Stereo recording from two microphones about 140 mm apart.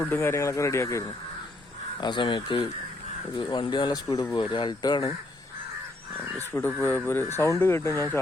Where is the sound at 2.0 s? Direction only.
35° left (ahead or behind).